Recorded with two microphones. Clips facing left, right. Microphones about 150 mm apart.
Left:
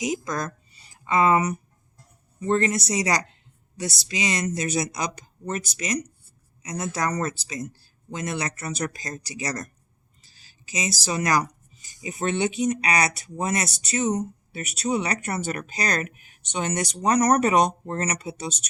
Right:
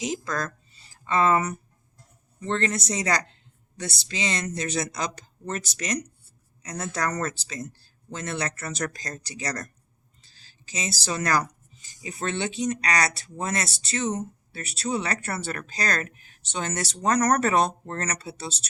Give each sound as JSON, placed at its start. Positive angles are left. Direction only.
{"t": 0.0, "sound": "speech", "side_deg": 15}